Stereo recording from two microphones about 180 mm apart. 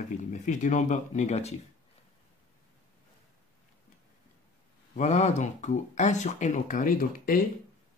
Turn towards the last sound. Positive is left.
turn(degrees=50)  # may be behind; listen again after turning